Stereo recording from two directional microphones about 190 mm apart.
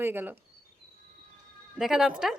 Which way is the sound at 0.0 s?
10° right (ahead or behind).